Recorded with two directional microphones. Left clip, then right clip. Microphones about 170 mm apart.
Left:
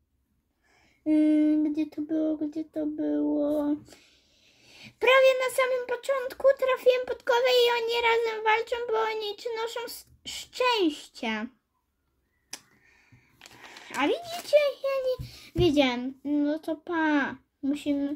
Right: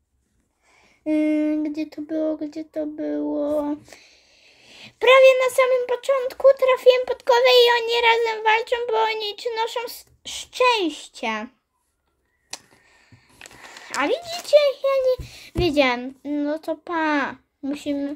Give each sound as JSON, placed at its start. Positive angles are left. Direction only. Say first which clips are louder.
{"t": 1.0, "sound": "speech", "louder": "right 2 dB", "side_deg": 5}
{"t": 13.4, "sound": "a sound", "louder": "right 7 dB", "side_deg": -25}
{"t": 13.8, "sound": "speech", "louder": "right 5 dB", "side_deg": 0}